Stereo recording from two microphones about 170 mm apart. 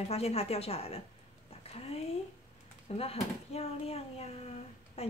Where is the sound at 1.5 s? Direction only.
35° left (ahead or behind).